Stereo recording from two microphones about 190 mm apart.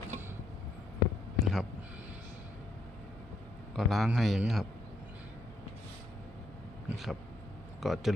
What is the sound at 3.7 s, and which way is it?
Speech, centre (ahead or behind).